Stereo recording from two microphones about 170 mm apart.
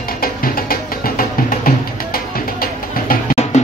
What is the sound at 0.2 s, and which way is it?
Music, 60° left (ahead or behind).